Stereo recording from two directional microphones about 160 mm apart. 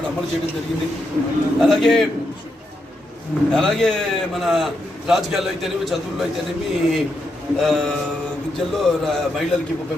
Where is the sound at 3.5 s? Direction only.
5° left (ahead or behind).